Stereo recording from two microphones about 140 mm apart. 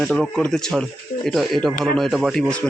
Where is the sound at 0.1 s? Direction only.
10° left (ahead or behind).